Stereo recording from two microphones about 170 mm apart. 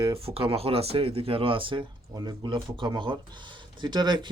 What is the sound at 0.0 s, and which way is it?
Speech, 35° right (ahead or behind).